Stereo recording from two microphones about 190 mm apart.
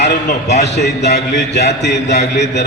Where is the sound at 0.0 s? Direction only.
60° left (ahead or behind).